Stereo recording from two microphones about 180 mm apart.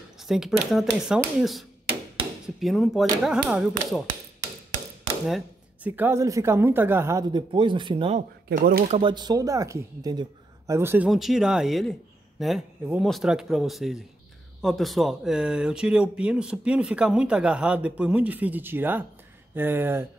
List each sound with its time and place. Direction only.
0.2 s speech: centre (ahead or behind)
5.9 s speech: 10° right (ahead or behind); by 8.2 s 30° right (ahead or behind)
8.5 s speech: 55° right (ahead or behind)
8.8 s speech: 35° right (ahead or behind)
9.1 s speech: 20° right (ahead or behind)
11.1 s speech: centre (ahead or behind)